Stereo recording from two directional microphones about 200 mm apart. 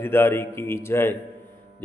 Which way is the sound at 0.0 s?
10° left (ahead or behind).